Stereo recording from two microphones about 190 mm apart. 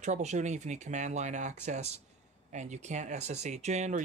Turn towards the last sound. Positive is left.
turn(degrees=-35)  # may be behind; listen again after turning